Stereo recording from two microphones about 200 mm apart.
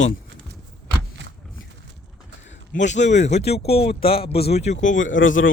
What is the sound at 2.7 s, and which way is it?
Speech, 35° left (ahead or behind).